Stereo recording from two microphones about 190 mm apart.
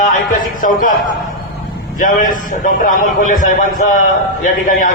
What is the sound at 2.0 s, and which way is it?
Speech, 45° left (ahead or behind).